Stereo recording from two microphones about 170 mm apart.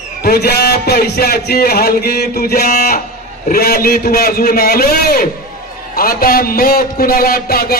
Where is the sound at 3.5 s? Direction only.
65° left (ahead or behind).